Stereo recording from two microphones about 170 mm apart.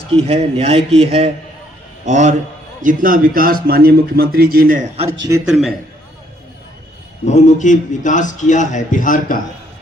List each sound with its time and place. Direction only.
0.1 s a man's voice: 35° right (ahead or behind)
2.8 s speech: 55° right (ahead or behind)
5.3 s a man's voice: 20° right (ahead or behind)
7.3 s a man's voice: 45° left (ahead or behind)